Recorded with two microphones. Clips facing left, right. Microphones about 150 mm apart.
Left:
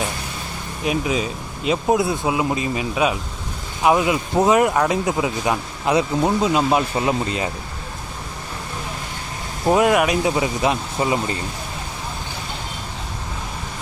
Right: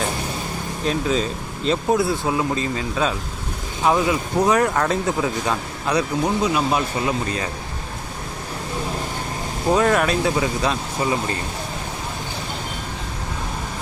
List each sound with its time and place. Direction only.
0.9 s speech: 10° left (ahead or behind)
1.9 s speech: 20° left (ahead or behind)
9.7 s speech: 10° left (ahead or behind)